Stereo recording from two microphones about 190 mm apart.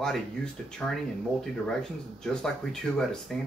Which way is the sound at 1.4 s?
Centre (ahead or behind).